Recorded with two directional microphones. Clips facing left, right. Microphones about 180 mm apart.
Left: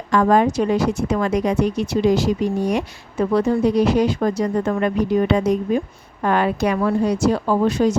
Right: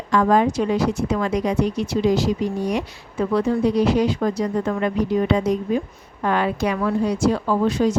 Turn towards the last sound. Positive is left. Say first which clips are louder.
# left 2 dB
turn(degrees=45)  # may be behind; listen again after turning